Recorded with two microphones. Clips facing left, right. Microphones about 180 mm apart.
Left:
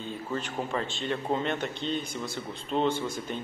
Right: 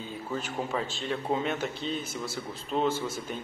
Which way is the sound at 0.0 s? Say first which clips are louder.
Left 1 dB; 5° right (ahead or behind).